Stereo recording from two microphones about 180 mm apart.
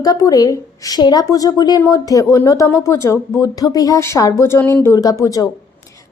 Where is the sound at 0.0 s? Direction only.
20° left (ahead or behind).